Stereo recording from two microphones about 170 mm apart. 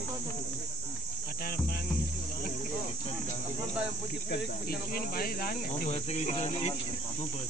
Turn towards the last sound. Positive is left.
turn(degrees=40)  # may be behind; listen again after turning